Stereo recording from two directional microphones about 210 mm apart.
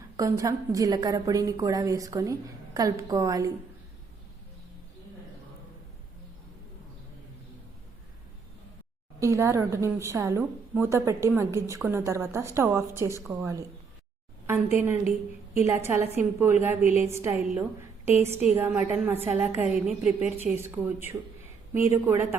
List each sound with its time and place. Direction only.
0.2 s a woman's voice: 15° right (ahead or behind)
9.2 s a woman's voice: 15° right (ahead or behind)
21.9 s a woman's voice: 10° right (ahead or behind)